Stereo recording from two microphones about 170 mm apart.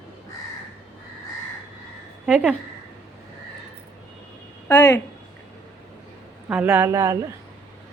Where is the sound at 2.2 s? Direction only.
5° right (ahead or behind).